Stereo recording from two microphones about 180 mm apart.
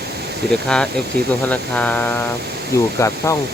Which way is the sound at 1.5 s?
10° left (ahead or behind).